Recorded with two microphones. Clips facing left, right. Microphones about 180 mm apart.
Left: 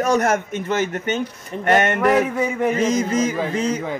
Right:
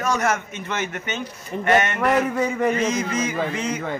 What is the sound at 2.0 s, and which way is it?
Speech, 5° left (ahead or behind).